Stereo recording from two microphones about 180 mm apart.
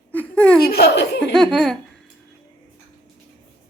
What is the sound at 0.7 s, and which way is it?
Speech, 65° left (ahead or behind).